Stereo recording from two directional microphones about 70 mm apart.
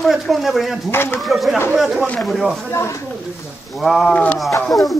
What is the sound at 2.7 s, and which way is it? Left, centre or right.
Speech, left.